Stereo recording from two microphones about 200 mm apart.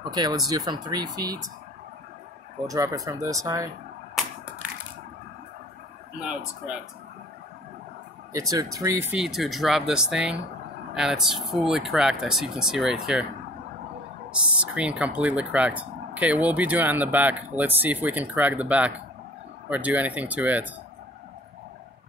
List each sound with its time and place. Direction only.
0.0 s speech: 20° right (ahead or behind)
2.7 s speech: 15° right (ahead or behind)
8.3 s speech: 15° right (ahead or behind)
9.1 s speech: centre (ahead or behind)
14.6 s speech: 5° right (ahead or behind)